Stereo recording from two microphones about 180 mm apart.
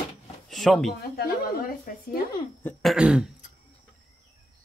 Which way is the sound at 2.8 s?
5° right (ahead or behind).